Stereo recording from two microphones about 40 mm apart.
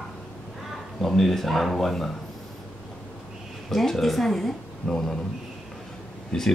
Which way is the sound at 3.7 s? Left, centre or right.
Centre.